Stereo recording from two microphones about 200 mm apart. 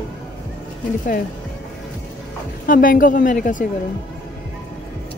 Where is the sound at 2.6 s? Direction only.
45° left (ahead or behind).